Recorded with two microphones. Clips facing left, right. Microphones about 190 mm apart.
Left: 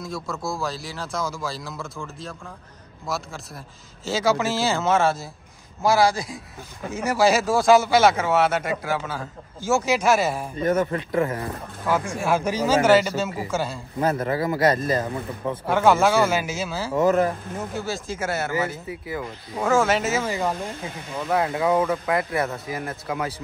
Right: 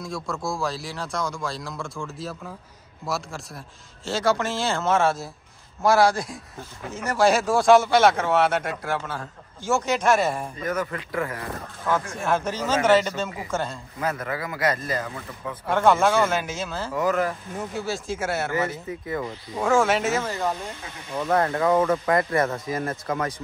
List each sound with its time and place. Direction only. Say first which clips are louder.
0.0 s speech: even; centre (ahead or behind)
10.6 s speech: left 8 dB; 25° left (ahead or behind)
11.8 s speech: left 2 dB; 10° left (ahead or behind)
13.9 s speech: left 6 dB; 30° left (ahead or behind)
15.6 s speech: left 1 dB; 5° left (ahead or behind)
16.9 s speech: left 4 dB; 25° left (ahead or behind)
17.6 s speech: even; centre (ahead or behind)